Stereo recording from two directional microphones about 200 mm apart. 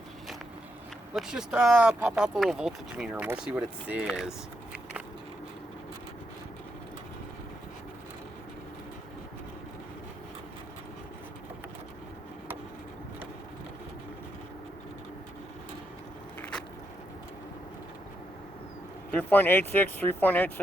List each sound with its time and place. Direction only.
1.1 s speech: 5° right (ahead or behind)
16.4 s a sound: 5° left (ahead or behind)
19.1 s speech: 10° left (ahead or behind)